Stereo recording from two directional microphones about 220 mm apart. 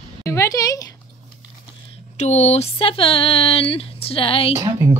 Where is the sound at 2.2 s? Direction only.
30° left (ahead or behind).